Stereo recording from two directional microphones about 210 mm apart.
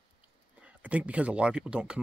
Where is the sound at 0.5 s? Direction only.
5° right (ahead or behind).